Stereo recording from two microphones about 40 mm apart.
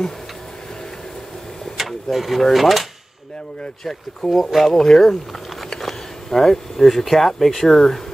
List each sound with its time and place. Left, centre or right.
1.8 s a sound: centre
2.5 s speech: centre
3.8 s speech: centre
4.5 s speech: centre
4.7 s speech: centre